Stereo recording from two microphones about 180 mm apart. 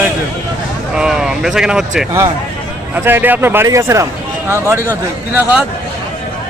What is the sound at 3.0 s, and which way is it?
Speech, 10° right (ahead or behind).